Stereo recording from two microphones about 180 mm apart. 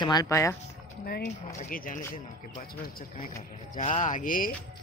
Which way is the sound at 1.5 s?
50° left (ahead or behind).